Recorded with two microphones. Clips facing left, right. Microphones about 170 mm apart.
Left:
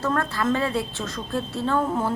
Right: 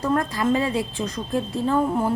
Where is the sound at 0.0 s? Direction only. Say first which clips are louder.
Right 2 dB; 15° right (ahead or behind).